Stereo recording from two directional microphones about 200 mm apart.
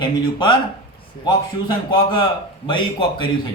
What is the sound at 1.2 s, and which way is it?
A man's voice, 25° left (ahead or behind).